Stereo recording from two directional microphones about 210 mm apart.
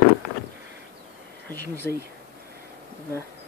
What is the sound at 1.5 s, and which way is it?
Speech, 10° left (ahead or behind).